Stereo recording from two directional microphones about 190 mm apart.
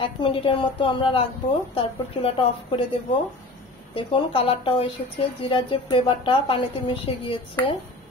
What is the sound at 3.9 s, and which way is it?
A woman's voice, 25° left (ahead or behind).